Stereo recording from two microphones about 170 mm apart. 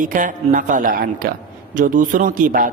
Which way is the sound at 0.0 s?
50° right (ahead or behind).